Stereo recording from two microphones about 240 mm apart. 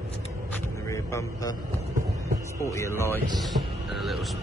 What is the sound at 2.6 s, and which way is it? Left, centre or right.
Speech, centre.